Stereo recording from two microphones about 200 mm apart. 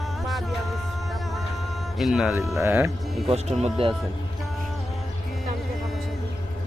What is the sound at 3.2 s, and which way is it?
Speech, 30° right (ahead or behind).